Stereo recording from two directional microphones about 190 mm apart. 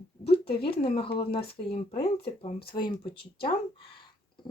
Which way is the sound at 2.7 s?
25° left (ahead or behind).